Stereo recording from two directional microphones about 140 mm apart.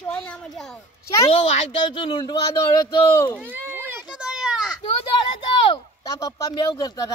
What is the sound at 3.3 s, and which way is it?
Children playing, 15° right (ahead or behind).